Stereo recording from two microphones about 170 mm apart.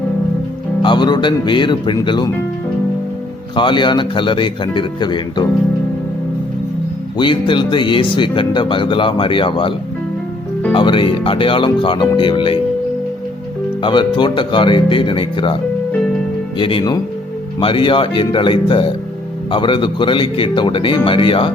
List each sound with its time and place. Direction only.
0.8 s speech: 25° left (ahead or behind)
3.5 s speech: 30° left (ahead or behind)
7.2 s speech: 30° left (ahead or behind)
13.8 s speech: 30° left (ahead or behind)
16.6 s speech: 30° left (ahead or behind)